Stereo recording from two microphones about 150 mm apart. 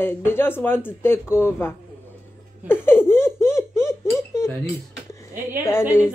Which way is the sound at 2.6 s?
15° left (ahead or behind).